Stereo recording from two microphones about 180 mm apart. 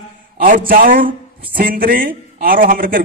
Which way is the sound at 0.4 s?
50° right (ahead or behind).